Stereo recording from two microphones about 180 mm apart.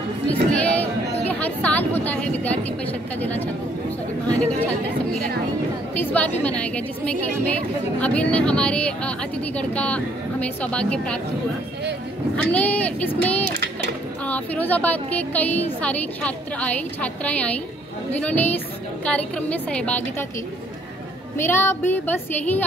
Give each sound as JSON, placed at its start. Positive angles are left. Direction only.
{"t": 0.3, "sound": "a sound", "side_deg": 10}
{"t": 2.0, "sound": "speech", "side_deg": 10}
{"t": 5.9, "sound": "speech", "side_deg": 10}
{"t": 12.4, "sound": "speech", "side_deg": 5}
{"t": 13.5, "sound": "a sound", "side_deg": -65}
{"t": 14.2, "sound": "speech", "side_deg": 10}
{"t": 21.4, "sound": "speech", "side_deg": 15}